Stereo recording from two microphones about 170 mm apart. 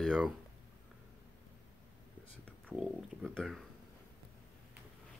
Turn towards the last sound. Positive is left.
turn(degrees=0)  # may be behind; listen again after turning